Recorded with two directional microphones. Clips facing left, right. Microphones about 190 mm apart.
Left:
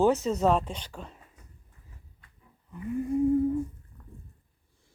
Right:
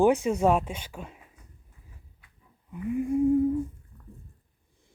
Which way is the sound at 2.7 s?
10° right (ahead or behind).